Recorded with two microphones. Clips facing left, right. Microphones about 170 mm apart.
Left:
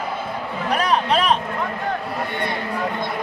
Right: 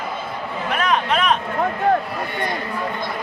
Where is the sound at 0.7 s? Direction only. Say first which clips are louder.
Left 1 dB; 35° left (ahead or behind).